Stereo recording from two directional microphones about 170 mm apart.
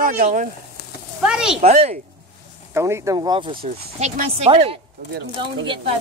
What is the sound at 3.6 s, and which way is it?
Speech, 45° right (ahead or behind).